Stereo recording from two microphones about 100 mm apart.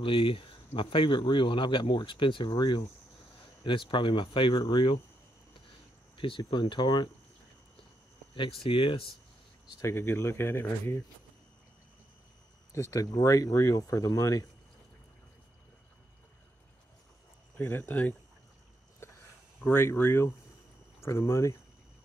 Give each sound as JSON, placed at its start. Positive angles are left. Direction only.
{"t": 0.0, "sound": "speech", "side_deg": 60}
{"t": 6.1, "sound": "speech", "side_deg": 55}
{"t": 8.6, "sound": "speech", "side_deg": 60}
{"t": 9.8, "sound": "speech", "side_deg": 25}
{"t": 12.7, "sound": "speech", "side_deg": 30}
{"t": 17.6, "sound": "speech", "side_deg": 20}
{"t": 19.6, "sound": "speech", "side_deg": 25}